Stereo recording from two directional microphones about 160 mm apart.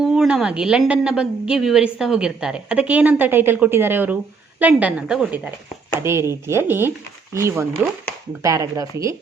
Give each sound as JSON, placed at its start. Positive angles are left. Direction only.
{"t": 0.0, "sound": "a woman's voice", "side_deg": -5}
{"t": 6.0, "sound": "speech", "side_deg": -15}